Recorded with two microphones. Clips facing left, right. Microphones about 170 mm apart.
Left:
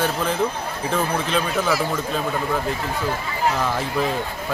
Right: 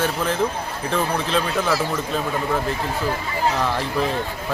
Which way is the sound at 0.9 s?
Centre (ahead or behind).